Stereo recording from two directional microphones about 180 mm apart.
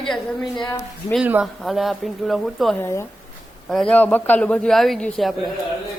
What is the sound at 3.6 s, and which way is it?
A man's voice, 5° left (ahead or behind).